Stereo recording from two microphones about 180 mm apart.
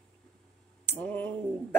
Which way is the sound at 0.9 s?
10° left (ahead or behind).